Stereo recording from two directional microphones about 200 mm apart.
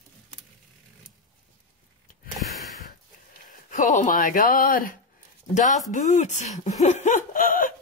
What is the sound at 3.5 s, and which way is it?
Speech, 40° left (ahead or behind).